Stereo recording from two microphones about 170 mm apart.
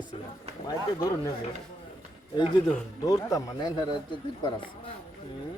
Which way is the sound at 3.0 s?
20° left (ahead or behind).